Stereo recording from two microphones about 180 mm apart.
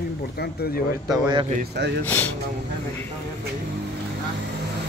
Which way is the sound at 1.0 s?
20° right (ahead or behind).